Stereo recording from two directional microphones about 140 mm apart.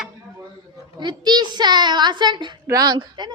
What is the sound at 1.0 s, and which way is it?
A woman's voice, 30° right (ahead or behind).